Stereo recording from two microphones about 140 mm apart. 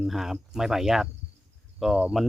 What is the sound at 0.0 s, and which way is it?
Speech, centre (ahead or behind).